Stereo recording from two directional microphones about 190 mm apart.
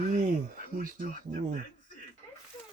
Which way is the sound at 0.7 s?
45° right (ahead or behind).